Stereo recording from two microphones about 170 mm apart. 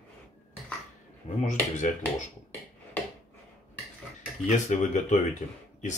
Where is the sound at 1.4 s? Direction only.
45° left (ahead or behind).